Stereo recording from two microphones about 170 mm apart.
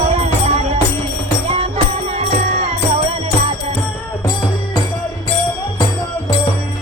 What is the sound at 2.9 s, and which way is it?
Music, 25° right (ahead or behind).